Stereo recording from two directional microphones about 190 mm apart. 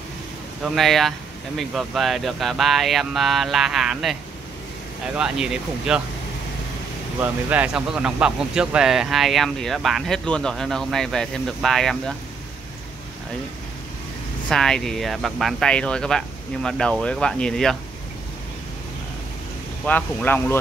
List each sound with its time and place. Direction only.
0.7 s speech: centre (ahead or behind)
7.2 s speech: 10° right (ahead or behind)
14.5 s speech: 5° left (ahead or behind)
19.9 s speech: 10° left (ahead or behind)